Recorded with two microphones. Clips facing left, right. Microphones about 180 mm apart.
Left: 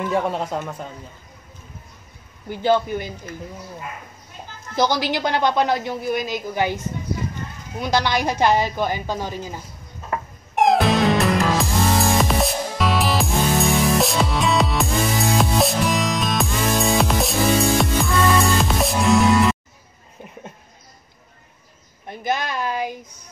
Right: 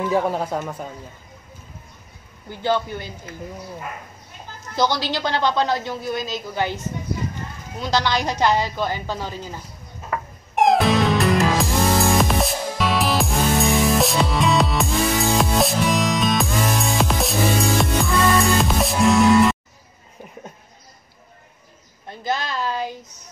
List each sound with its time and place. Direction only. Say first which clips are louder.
0.1 s speech: right 1 dB; 5° right (ahead or behind)
2.5 s speech: left 3 dB; 15° left (ahead or behind)
4.7 s speech: left 1 dB; 15° left (ahead or behind)
7.8 s speech: left 1 dB; 15° left (ahead or behind)
10.5 s music: even; centre (ahead or behind)
22.0 s speech: left 1 dB; 15° left (ahead or behind)